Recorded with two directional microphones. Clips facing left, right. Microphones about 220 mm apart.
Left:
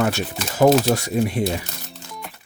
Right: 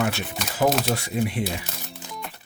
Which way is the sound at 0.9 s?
40° left (ahead or behind).